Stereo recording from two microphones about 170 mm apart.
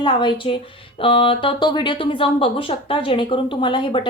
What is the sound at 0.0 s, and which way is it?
Speech, 30° left (ahead or behind).